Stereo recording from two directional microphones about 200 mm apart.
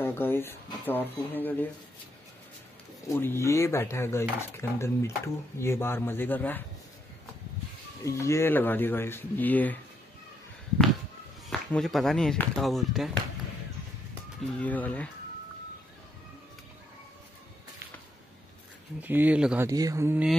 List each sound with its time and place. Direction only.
0.0 s speech: 10° left (ahead or behind)
3.1 s speech: 10° left (ahead or behind)
8.0 s speech: 15° left (ahead or behind)
11.4 s speech: centre (ahead or behind)
14.6 s speech: 5° left (ahead or behind)
18.9 s speech: 10° right (ahead or behind)
19.7 s speech: 15° right (ahead or behind)